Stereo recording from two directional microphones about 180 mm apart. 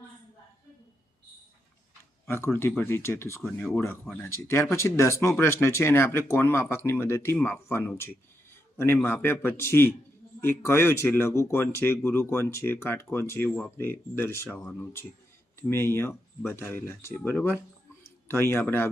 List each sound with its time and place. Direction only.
2.2 s speech: 15° left (ahead or behind)